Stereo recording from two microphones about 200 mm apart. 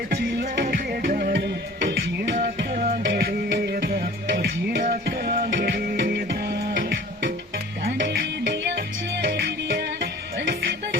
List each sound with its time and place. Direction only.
0.1 s music: 55° right (ahead or behind)